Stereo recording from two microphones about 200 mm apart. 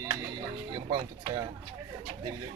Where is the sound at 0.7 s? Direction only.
25° right (ahead or behind).